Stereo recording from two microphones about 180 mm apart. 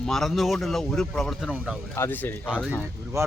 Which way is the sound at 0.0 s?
Centre (ahead or behind).